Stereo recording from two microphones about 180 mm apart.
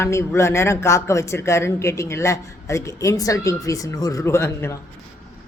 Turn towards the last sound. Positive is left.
turn(degrees=15)  # may be behind; listen again after turning